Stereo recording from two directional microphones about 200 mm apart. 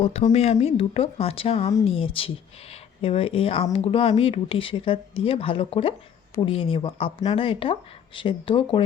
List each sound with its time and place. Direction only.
0.0 s speech: 30° left (ahead or behind)